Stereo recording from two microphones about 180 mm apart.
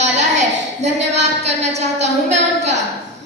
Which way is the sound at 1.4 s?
40° right (ahead or behind).